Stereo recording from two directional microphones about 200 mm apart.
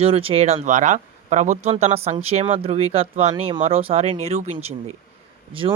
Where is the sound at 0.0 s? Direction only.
30° right (ahead or behind).